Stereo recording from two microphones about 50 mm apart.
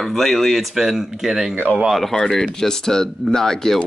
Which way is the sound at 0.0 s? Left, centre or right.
Centre.